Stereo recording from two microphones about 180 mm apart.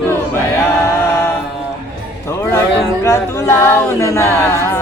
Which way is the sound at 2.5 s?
15° left (ahead or behind).